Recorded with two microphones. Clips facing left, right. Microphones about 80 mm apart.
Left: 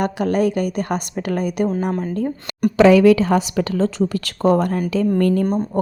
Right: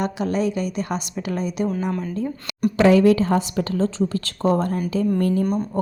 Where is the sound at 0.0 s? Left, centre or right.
Left.